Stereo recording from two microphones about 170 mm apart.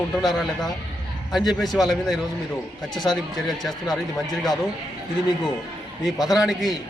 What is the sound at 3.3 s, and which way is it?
Speech, centre (ahead or behind).